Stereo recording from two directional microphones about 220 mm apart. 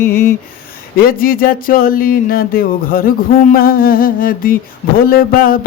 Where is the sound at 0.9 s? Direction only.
40° left (ahead or behind).